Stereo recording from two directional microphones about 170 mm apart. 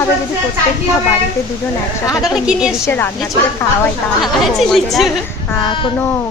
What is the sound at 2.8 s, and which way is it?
Speech, 15° left (ahead or behind).